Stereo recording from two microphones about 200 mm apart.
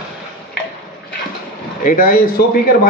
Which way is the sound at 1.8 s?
45° left (ahead or behind).